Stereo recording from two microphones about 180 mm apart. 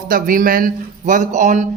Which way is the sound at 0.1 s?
50° right (ahead or behind).